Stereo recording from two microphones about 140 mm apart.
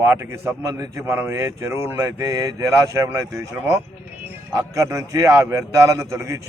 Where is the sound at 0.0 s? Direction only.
20° right (ahead or behind).